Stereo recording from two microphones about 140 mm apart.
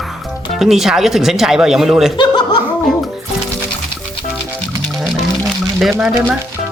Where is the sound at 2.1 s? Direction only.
35° left (ahead or behind).